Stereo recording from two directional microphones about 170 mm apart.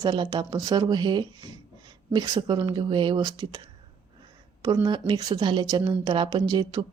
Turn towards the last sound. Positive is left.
turn(degrees=-25)  # may be behind; listen again after turning